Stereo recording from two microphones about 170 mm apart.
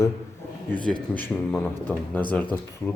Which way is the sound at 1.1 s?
10° left (ahead or behind).